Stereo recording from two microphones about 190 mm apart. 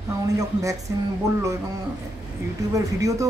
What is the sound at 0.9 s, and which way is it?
Speech, 15° right (ahead or behind).